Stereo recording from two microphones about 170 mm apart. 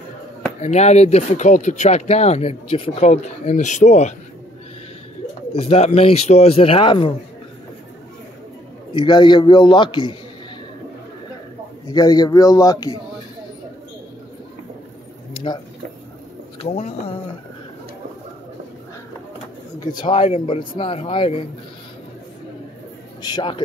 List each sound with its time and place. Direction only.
0.6 s speech: 40° left (ahead or behind)
5.5 s speech: 35° left (ahead or behind)
8.9 s a man's voice: 25° left (ahead or behind)
11.9 s a man's voice: 20° left (ahead or behind)
15.3 s a sound: 30° left (ahead or behind)
16.6 s speech: 40° left (ahead or behind)
20.0 s speech: 30° left (ahead or behind)
23.2 s a man's voice: 25° left (ahead or behind)